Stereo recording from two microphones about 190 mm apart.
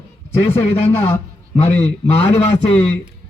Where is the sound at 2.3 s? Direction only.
35° left (ahead or behind).